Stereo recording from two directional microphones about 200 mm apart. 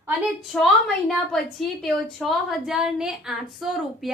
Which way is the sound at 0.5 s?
Centre (ahead or behind).